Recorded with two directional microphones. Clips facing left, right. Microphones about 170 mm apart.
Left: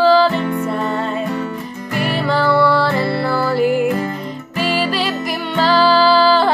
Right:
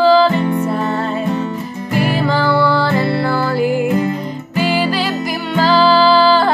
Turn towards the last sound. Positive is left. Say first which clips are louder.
# right 1 dB
turn(degrees=0)  # may be behind; listen again after turning